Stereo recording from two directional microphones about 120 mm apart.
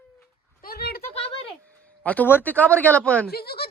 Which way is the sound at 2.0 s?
10° left (ahead or behind).